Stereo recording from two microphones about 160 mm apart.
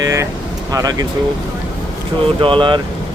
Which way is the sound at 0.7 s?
20° right (ahead or behind).